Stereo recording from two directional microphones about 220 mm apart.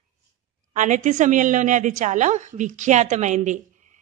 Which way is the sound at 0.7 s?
35° right (ahead or behind).